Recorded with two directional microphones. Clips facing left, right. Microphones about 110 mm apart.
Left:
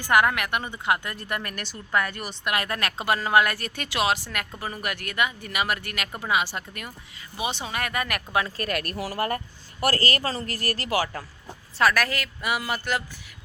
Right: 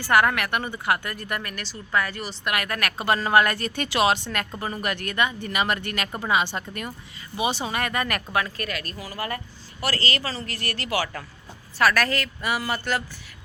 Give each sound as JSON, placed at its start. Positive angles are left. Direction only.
{"t": 0.0, "sound": "speech", "side_deg": 15}
{"t": 1.5, "sound": "speech", "side_deg": 50}
{"t": 2.4, "sound": "speech", "side_deg": 25}
{"t": 3.1, "sound": "a woman's voice", "side_deg": 10}
{"t": 8.3, "sound": "speech", "side_deg": 25}
{"t": 8.6, "sound": "speech", "side_deg": 60}
{"t": 9.8, "sound": "speech", "side_deg": 45}
{"t": 11.8, "sound": "a woman's voice", "side_deg": 20}